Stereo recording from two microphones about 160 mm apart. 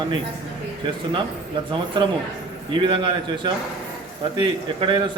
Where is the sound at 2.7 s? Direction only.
30° right (ahead or behind).